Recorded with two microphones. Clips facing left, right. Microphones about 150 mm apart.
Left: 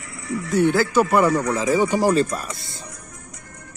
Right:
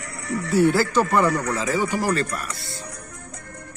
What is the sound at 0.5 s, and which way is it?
Speech, 5° right (ahead or behind).